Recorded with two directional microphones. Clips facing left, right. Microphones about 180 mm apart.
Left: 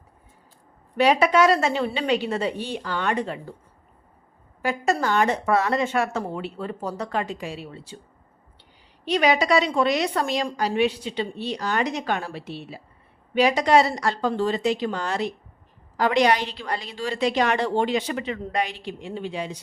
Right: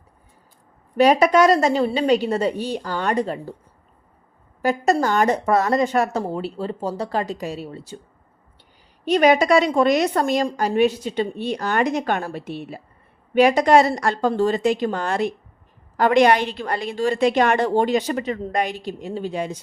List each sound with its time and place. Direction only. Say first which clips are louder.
0.9 s a woman's voice: right 4 dB; 40° right (ahead or behind)
4.6 s a woman's voice: right 4 dB; 40° right (ahead or behind)
9.0 s a woman's voice: right 5 dB; 45° right (ahead or behind)